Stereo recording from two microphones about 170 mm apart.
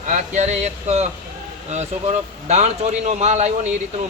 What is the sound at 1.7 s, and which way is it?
A man's voice, 40° right (ahead or behind).